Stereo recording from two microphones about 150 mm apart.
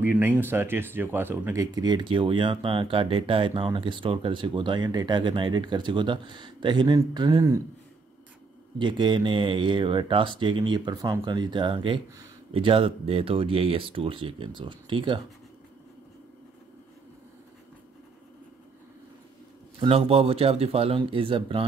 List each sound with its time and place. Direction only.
0.0 s speech: 15° right (ahead or behind)
8.7 s speech: 30° right (ahead or behind)
19.8 s speech: 40° right (ahead or behind)